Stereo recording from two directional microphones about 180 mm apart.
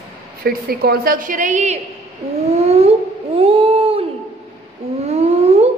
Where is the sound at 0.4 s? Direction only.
60° right (ahead or behind); by 1.8 s 40° right (ahead or behind).